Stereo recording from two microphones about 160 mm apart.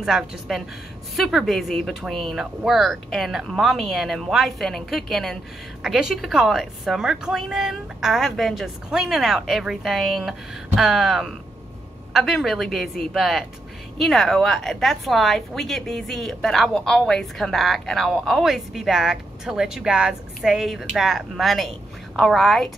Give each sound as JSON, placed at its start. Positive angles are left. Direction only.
{"t": 0.0, "sound": "speech", "side_deg": 0}